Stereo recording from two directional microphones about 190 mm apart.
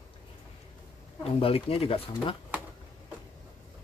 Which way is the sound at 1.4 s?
30° left (ahead or behind).